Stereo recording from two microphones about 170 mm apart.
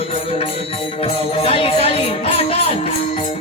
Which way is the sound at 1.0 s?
35° left (ahead or behind).